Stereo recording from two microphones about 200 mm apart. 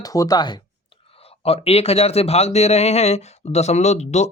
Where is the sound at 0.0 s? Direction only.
20° left (ahead or behind).